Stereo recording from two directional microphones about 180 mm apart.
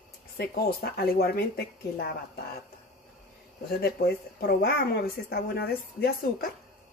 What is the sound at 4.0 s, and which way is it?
Speech, 60° left (ahead or behind).